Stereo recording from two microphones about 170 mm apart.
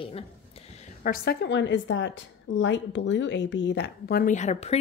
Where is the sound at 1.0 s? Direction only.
60° left (ahead or behind).